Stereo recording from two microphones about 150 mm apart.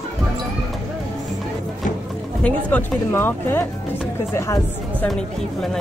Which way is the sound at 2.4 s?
10° left (ahead or behind).